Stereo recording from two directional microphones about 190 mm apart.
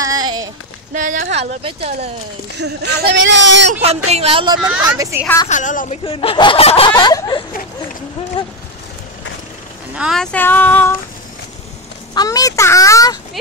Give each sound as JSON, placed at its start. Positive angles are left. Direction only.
{"t": 0.0, "sound": "run", "side_deg": -20}
{"t": 0.9, "sound": "speech", "side_deg": -45}
{"t": 2.6, "sound": "speech", "side_deg": -60}
{"t": 3.8, "sound": "speech", "side_deg": -35}
{"t": 4.8, "sound": "a woman's voice", "side_deg": -15}
{"t": 5.5, "sound": "a woman's voice", "side_deg": 40}
{"t": 6.0, "sound": "speech", "side_deg": 25}
{"t": 9.9, "sound": "speech", "side_deg": 0}
{"t": 12.1, "sound": "a child's voice", "side_deg": 20}